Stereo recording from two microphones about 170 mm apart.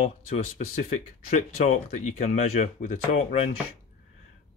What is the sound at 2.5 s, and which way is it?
Speech, 55° left (ahead or behind).